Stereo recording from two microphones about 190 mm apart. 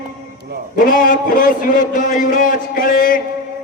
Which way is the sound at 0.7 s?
45° left (ahead or behind).